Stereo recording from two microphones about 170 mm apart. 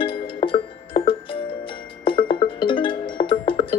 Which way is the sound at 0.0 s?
30° left (ahead or behind).